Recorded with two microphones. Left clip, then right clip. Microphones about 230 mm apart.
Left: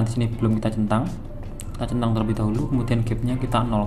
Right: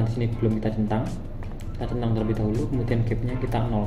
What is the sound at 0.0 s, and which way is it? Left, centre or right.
A man's voice, left.